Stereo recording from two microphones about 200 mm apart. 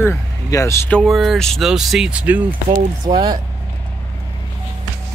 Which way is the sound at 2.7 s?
25° right (ahead or behind).